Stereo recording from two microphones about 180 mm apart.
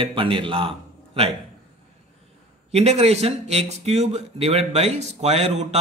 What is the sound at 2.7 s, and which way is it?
Speech, 35° right (ahead or behind).